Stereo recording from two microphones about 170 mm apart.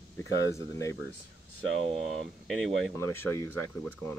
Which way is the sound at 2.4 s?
Centre (ahead or behind).